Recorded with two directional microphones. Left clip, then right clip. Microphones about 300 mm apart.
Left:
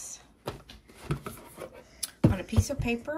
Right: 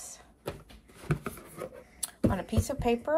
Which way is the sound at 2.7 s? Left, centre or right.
Centre.